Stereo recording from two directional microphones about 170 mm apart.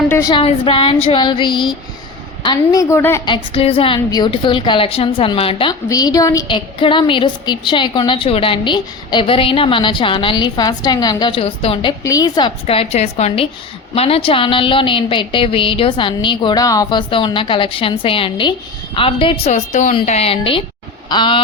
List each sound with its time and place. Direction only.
0.3 s a woman's voice: 30° left (ahead or behind)
2.9 s a woman's voice: 15° left (ahead or behind)
3.2 s a woman's voice: 30° left (ahead or behind)
5.9 s a woman's voice: 20° left (ahead or behind)
12.0 s a woman's voice: 20° left (ahead or behind)